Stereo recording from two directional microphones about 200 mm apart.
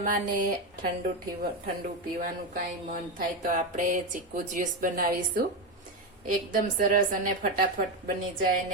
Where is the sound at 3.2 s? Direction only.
40° right (ahead or behind).